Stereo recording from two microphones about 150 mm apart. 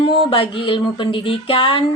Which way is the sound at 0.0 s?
35° left (ahead or behind).